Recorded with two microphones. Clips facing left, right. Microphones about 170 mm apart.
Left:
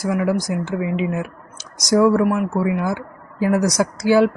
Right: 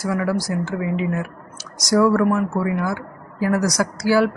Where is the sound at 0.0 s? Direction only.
20° left (ahead or behind).